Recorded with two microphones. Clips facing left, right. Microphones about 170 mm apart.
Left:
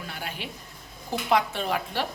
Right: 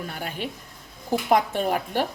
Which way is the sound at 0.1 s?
45° right (ahead or behind).